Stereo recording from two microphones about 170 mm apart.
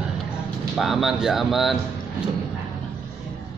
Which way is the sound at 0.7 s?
Centre (ahead or behind).